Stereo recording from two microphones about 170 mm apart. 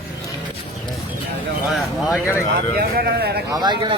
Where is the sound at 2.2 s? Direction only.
15° left (ahead or behind).